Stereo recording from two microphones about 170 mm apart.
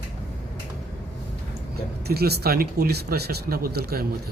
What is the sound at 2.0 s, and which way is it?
Speech, 70° right (ahead or behind).